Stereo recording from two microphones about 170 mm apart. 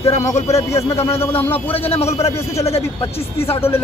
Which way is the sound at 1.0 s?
15° left (ahead or behind).